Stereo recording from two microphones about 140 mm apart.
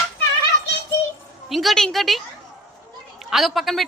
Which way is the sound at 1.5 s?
Centre (ahead or behind).